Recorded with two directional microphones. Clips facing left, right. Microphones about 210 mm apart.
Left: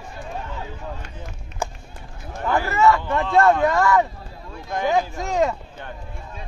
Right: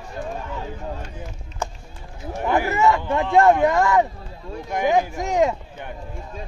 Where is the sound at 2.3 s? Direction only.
15° right (ahead or behind).